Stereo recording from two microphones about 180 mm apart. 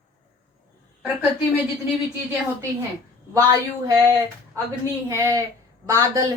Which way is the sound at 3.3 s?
20° right (ahead or behind).